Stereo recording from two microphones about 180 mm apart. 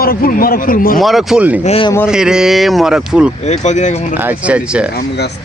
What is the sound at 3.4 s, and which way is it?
Speech, 40° left (ahead or behind).